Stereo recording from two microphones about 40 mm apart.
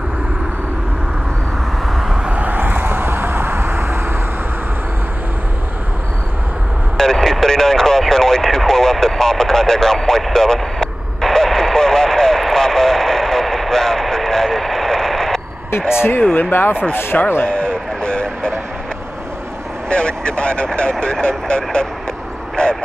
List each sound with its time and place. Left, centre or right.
2.2 s vehicle: right
2.6 s vehicle: right
7.0 s radio: centre
8.0 s a sound: centre
9.0 s radio: centre
16.3 s speech: left
17.1 s speech: left
17.5 s a sound: left
19.9 s speech: left
22.6 s vehicle: left